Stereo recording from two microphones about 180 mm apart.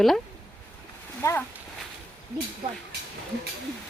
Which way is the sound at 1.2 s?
15° left (ahead or behind).